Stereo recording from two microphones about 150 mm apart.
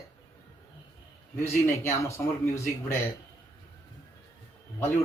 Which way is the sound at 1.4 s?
15° left (ahead or behind).